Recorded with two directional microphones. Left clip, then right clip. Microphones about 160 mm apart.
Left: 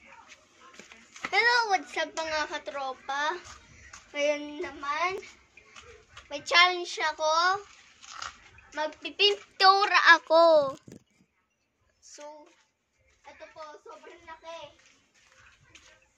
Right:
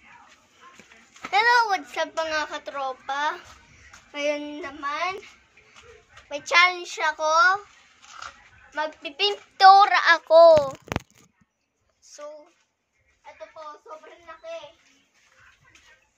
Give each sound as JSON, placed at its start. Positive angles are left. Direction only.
{"t": 1.3, "sound": "a child's voice", "side_deg": 25}
{"t": 9.0, "sound": "a child's voice", "side_deg": 30}
{"t": 12.0, "sound": "a sound", "side_deg": 30}